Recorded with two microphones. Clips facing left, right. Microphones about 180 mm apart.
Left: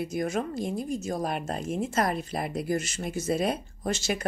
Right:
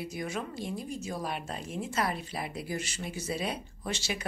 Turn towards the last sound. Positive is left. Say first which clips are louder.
# left 6 dB
turn(degrees=45)  # may be behind; listen again after turning